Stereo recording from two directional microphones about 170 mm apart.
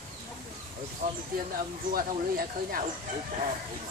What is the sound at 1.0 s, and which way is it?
Speech, 45° right (ahead or behind).